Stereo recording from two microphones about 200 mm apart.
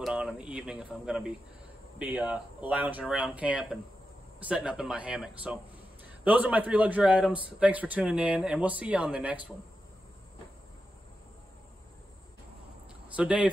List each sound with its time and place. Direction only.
0.0 s a man's voice: 5° right (ahead or behind)
13.1 s a man's voice: 5° right (ahead or behind)